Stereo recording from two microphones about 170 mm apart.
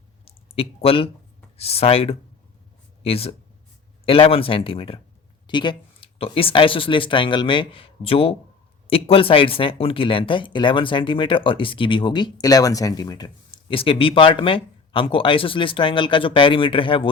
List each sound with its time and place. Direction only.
0.3 s speech: 35° left (ahead or behind)